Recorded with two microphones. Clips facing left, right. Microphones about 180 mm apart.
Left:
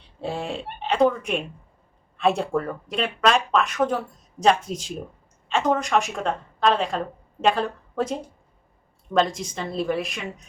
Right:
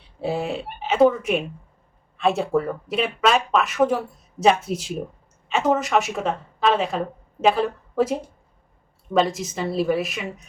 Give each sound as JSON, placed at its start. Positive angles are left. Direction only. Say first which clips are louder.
{"t": 0.2, "sound": "speech", "louder": "right 4 dB", "side_deg": -5}